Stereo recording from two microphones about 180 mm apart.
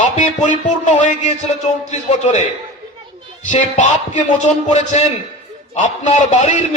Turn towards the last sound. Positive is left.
turn(degrees=40)  # may be behind; listen again after turning